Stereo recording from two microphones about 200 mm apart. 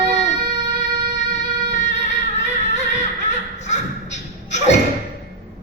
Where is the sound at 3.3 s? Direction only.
35° left (ahead or behind).